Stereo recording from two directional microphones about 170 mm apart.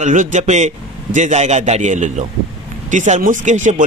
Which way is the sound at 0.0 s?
45° right (ahead or behind).